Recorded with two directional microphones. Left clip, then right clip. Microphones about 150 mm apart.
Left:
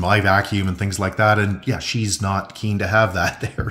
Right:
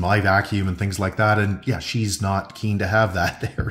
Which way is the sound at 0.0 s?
10° left (ahead or behind).